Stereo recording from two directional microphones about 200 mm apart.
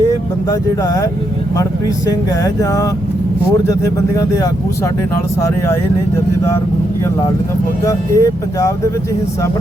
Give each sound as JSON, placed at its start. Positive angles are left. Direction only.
{"t": 2.4, "sound": "speech", "side_deg": 15}
{"t": 7.9, "sound": "speech", "side_deg": 15}